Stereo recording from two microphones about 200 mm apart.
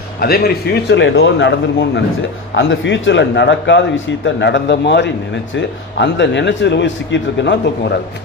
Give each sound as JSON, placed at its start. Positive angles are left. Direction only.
{"t": 0.2, "sound": "a man's voice", "side_deg": 50}
{"t": 2.6, "sound": "a man's voice", "side_deg": 70}